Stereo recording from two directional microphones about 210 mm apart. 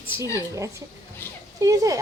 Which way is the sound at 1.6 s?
15° right (ahead or behind).